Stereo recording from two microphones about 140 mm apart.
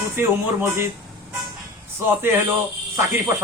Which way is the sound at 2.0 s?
15° right (ahead or behind).